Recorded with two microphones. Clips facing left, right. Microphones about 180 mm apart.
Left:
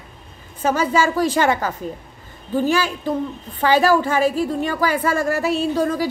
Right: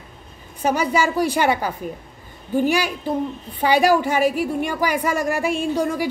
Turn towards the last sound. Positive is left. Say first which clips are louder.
# left 2 dB
turn(degrees=-15)  # may be behind; listen again after turning